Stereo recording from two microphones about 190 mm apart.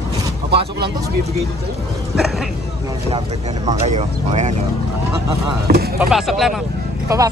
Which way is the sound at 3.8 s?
35° right (ahead or behind).